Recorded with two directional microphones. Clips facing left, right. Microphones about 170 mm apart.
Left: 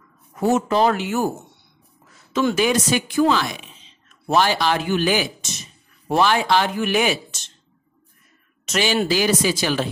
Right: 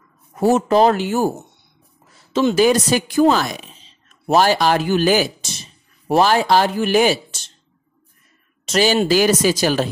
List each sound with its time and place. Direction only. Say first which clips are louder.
0.3 s a woman's voice: right 4 dB; 35° right (ahead or behind)
8.6 s speech: right 4 dB; 40° right (ahead or behind)